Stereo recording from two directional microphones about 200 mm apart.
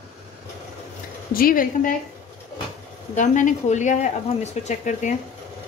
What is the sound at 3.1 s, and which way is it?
Speech, 40° left (ahead or behind).